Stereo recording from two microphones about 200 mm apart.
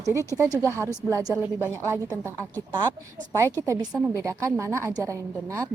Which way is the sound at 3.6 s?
15° right (ahead or behind).